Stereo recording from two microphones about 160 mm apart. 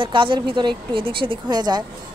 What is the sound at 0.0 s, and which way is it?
A woman's voice, 30° right (ahead or behind).